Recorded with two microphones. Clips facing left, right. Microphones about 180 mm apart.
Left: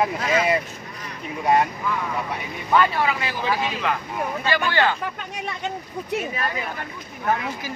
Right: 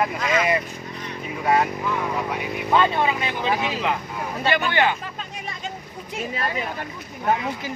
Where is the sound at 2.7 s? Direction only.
20° right (ahead or behind).